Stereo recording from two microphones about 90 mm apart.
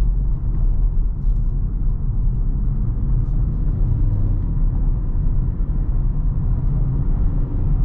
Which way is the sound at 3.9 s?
10° right (ahead or behind).